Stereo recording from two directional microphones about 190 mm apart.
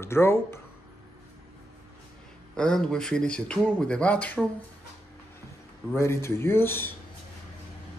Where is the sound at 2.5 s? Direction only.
5° left (ahead or behind).